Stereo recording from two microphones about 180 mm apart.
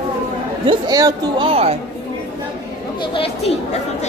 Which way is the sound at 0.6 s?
20° right (ahead or behind).